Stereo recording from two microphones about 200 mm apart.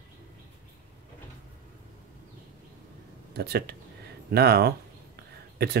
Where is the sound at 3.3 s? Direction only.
55° right (ahead or behind).